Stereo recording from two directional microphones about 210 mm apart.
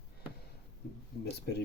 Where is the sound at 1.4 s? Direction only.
50° left (ahead or behind).